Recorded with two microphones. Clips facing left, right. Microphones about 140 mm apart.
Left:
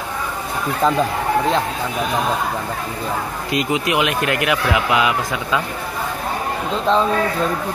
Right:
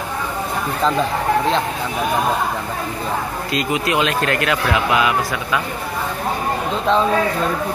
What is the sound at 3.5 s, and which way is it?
Speech, 20° left (ahead or behind).